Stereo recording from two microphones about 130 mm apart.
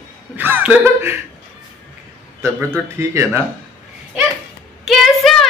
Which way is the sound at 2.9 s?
20° right (ahead or behind).